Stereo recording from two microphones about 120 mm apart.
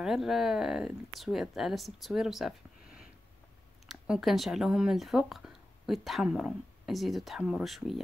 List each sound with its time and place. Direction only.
0.0 s speech: centre (ahead or behind)